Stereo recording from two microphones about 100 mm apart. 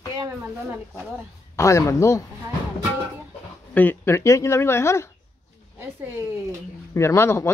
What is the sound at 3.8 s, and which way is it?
Speech, 20° left (ahead or behind).